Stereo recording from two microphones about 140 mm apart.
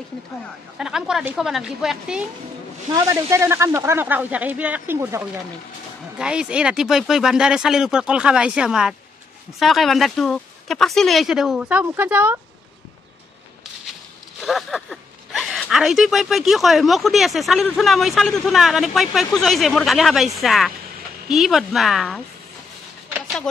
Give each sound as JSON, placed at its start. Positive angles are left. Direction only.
{"t": 0.7, "sound": "speech", "side_deg": -5}
{"t": 2.9, "sound": "speech", "side_deg": -25}
{"t": 14.4, "sound": "a sound", "side_deg": 0}
{"t": 15.7, "sound": "speech", "side_deg": -5}